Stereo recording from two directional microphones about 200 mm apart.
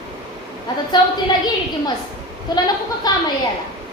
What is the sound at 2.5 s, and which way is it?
Speech, 20° left (ahead or behind).